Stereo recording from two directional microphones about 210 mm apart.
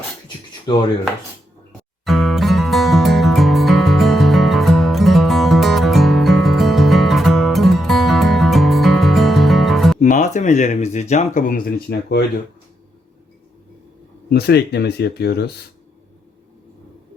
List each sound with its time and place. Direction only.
2.0 s music: centre (ahead or behind)
10.0 s speech: 35° left (ahead or behind); by 12.2 s 50° left (ahead or behind)
14.3 s speech: 50° left (ahead or behind)